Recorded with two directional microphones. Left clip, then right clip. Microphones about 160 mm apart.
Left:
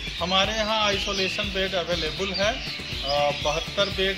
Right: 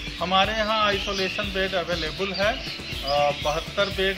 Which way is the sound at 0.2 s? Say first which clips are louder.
Right 2 dB; 20° left (ahead or behind).